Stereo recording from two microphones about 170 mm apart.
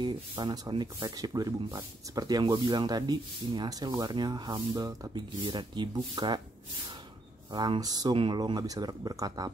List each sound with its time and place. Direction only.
0.0 s speech: 25° right (ahead or behind)
7.5 s speech: 25° right (ahead or behind)